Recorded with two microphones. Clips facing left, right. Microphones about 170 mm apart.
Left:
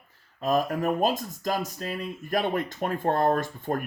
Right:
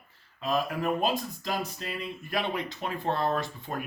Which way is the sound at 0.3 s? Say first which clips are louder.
Left 4 dB; 45° left (ahead or behind).